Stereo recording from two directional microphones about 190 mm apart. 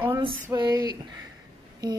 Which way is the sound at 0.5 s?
20° right (ahead or behind).